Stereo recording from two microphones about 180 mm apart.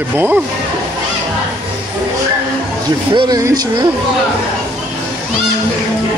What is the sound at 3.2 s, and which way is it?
Speech, 20° right (ahead or behind).